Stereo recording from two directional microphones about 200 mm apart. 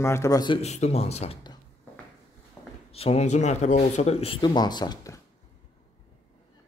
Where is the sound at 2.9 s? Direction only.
30° left (ahead or behind).